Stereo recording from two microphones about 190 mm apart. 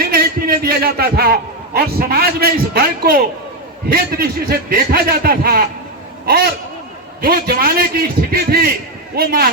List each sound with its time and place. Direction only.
0.1 s a man's voice: 50° right (ahead or behind)